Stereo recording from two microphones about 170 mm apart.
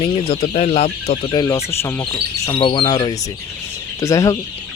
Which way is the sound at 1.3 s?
20° left (ahead or behind).